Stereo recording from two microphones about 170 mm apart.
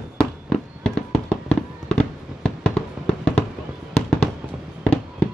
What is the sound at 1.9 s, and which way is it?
Fireworks, 5° left (ahead or behind).